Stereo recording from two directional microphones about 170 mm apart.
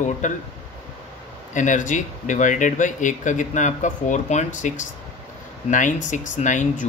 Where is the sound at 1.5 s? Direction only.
45° left (ahead or behind).